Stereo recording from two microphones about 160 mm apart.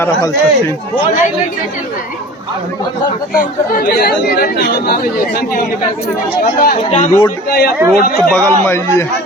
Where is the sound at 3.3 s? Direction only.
65° left (ahead or behind).